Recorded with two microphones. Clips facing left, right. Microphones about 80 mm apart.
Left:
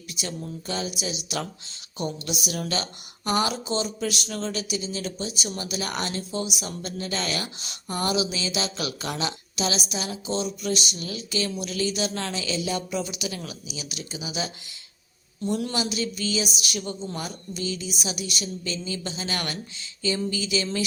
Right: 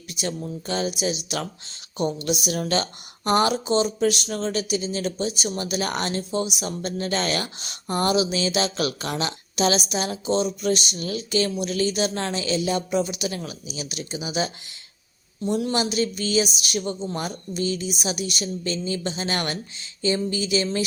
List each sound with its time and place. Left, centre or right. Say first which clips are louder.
0.1 s a sound: right 5 dB; right
0.7 s a woman's voice: right 6 dB; right
15.7 s speech: right 4 dB; right